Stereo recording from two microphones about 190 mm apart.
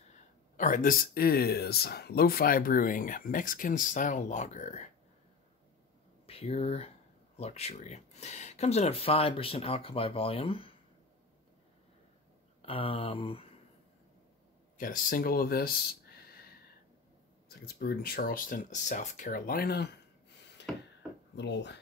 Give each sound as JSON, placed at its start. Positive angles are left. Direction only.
{"t": 0.6, "sound": "speech", "side_deg": 45}
{"t": 6.2, "sound": "speech", "side_deg": 30}
{"t": 12.6, "sound": "speech", "side_deg": 30}
{"t": 14.8, "sound": "speech", "side_deg": 45}
{"t": 17.5, "sound": "speech", "side_deg": 60}
{"t": 21.4, "sound": "speech", "side_deg": 70}